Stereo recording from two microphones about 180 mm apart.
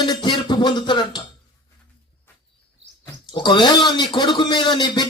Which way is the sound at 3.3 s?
25° left (ahead or behind).